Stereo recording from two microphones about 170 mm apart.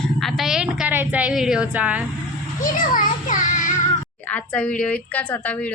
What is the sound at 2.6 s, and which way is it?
A child's voice, 50° left (ahead or behind).